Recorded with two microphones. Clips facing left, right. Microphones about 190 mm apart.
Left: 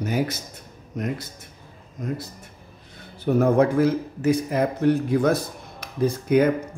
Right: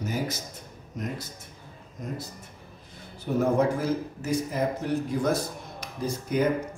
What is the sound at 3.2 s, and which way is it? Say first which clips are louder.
A man's voice: left 5 dB; 65° left (ahead or behind).